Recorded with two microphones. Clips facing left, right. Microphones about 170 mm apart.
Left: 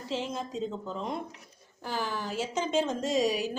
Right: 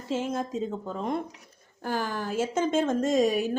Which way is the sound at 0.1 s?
50° right (ahead or behind).